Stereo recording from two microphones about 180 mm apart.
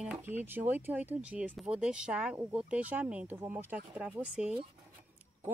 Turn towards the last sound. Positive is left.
turn(degrees=-5)  # may be behind; listen again after turning